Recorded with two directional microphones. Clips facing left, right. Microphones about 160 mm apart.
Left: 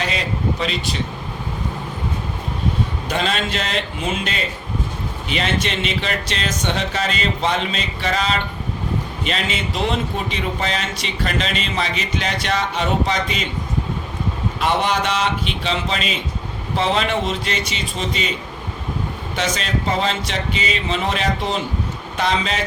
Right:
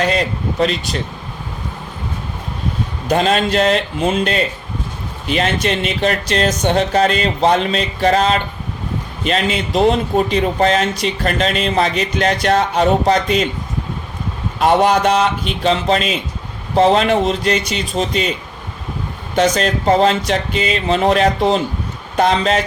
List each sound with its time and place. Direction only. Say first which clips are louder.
3.1 s speech: right 9 dB; 45° right (ahead or behind)
14.6 s speech: right 7 dB; 45° right (ahead or behind)
19.4 s speech: right 8 dB; 45° right (ahead or behind)